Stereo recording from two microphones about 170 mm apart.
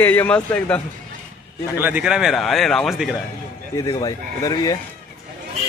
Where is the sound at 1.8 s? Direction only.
10° right (ahead or behind).